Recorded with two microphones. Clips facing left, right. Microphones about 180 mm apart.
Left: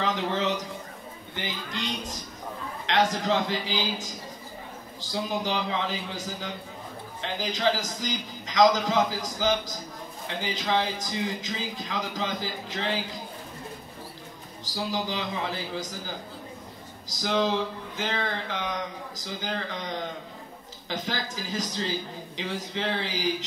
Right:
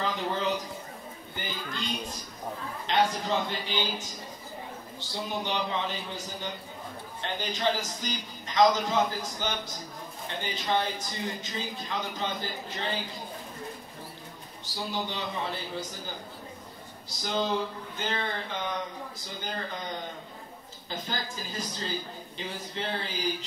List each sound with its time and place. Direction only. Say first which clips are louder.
0.0 s a sound: left 3 dB; 90° left
1.3 s a man's voice: left 3 dB; 90° left
2.9 s a man's voice: left 2 dB; 90° left
14.6 s a man's voice: left 3 dB; 90° left
17.1 s a man's voice: left 4 dB; 90° left